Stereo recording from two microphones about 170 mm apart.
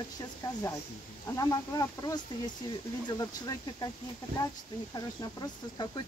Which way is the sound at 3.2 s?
20° left (ahead or behind).